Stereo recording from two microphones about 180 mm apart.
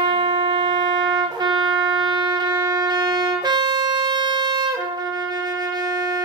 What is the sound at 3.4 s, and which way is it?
Wind instrument, 25° right (ahead or behind).